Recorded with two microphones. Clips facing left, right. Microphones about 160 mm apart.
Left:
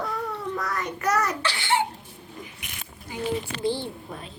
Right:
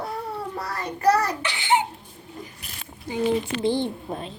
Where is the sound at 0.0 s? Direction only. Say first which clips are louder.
Even; 30° right (ahead or behind).